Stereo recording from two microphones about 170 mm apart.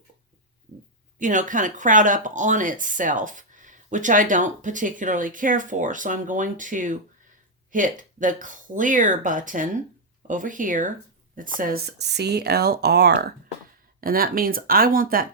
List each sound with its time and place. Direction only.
1.2 s speech: 50° right (ahead or behind); by 13.3 s 75° right (ahead or behind)
14.0 s speech: 60° right (ahead or behind)